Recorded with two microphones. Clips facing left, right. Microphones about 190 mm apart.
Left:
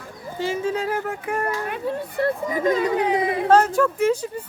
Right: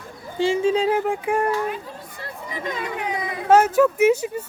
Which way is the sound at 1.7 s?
60° left (ahead or behind).